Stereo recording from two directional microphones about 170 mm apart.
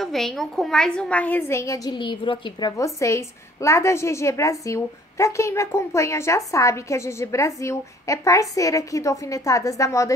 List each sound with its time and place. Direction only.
0.0 s a woman's voice: centre (ahead or behind); by 2.7 s 30° left (ahead or behind)
2.8 s a woman's voice: 20° left (ahead or behind)